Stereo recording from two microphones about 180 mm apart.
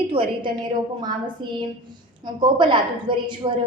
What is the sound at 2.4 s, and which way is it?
A woman's voice, 25° right (ahead or behind).